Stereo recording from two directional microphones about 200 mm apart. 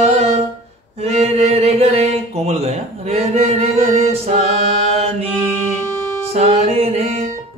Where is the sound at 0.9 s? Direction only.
30° right (ahead or behind).